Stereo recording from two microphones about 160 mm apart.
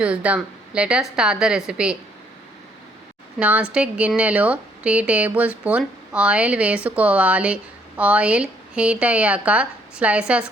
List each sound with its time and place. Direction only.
0.0 s speech: 5° right (ahead or behind)
3.4 s speech: 10° right (ahead or behind)